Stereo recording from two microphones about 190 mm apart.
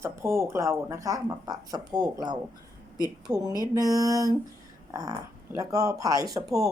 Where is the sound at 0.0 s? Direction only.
15° right (ahead or behind).